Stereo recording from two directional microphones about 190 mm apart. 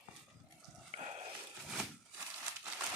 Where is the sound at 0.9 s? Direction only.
30° right (ahead or behind).